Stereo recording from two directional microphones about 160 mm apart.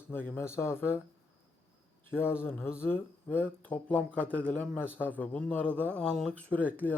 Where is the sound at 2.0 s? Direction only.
15° left (ahead or behind).